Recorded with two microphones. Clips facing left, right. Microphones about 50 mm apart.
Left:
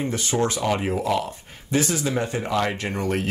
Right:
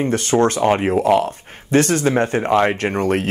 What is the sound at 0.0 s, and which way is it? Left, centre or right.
Speech, right.